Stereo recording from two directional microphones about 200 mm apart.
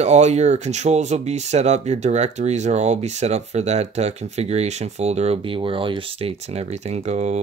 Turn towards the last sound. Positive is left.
turn(degrees=-35)  # may be behind; listen again after turning